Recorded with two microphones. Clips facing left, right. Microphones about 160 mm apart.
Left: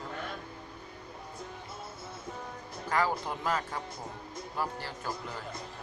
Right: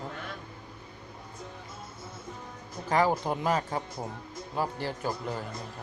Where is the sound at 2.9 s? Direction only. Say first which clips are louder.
Right 5 dB; 20° right (ahead or behind).